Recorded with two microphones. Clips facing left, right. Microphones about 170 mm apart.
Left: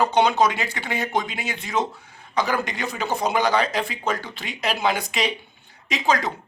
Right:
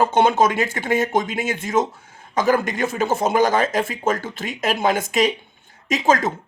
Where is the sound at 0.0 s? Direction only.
50° right (ahead or behind).